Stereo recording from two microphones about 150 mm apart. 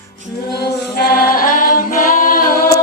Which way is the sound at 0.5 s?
90° left.